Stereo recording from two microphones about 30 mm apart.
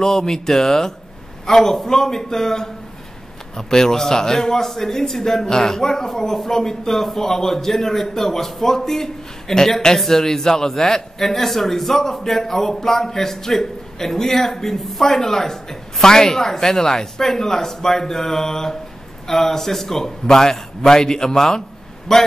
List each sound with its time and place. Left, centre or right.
0.0 s a man's voice: centre